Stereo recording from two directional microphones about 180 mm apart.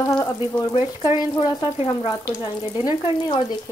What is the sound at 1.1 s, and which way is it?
Speech, 25° left (ahead or behind).